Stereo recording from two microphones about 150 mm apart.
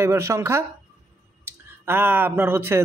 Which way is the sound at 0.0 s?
20° right (ahead or behind).